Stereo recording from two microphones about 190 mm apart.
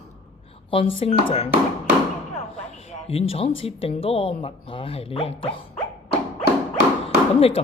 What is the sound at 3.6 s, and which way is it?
Speech, 30° left (ahead or behind).